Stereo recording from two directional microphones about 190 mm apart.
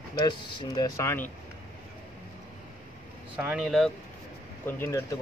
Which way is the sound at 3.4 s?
5° right (ahead or behind).